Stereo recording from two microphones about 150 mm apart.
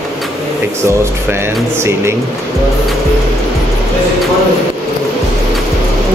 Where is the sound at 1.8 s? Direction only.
15° right (ahead or behind).